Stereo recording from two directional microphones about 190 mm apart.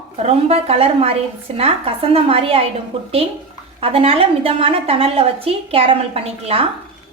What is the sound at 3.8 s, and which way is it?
Speech, 30° right (ahead or behind).